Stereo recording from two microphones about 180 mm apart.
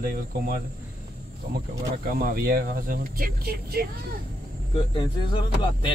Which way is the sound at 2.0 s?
55° right (ahead or behind).